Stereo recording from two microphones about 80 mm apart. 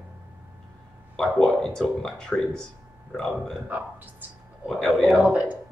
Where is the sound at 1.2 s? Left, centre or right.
Centre.